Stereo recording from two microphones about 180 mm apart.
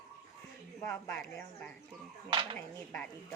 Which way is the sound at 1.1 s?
5° left (ahead or behind).